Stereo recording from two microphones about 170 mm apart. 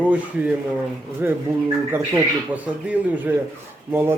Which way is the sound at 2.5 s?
10° right (ahead or behind).